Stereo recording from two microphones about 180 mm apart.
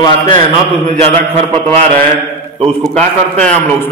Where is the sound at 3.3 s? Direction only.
10° left (ahead or behind).